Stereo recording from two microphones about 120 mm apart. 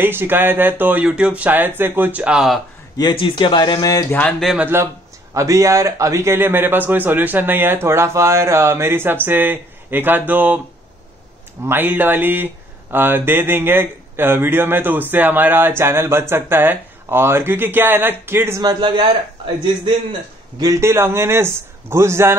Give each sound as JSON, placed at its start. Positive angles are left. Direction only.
{"t": 0.0, "sound": "a man's voice", "side_deg": -20}
{"t": 3.0, "sound": "speech", "side_deg": 40}
{"t": 4.6, "sound": "a man's voice", "side_deg": -20}
{"t": 11.6, "sound": "a man's voice", "side_deg": -15}
{"t": 18.6, "sound": "a man's voice", "side_deg": -40}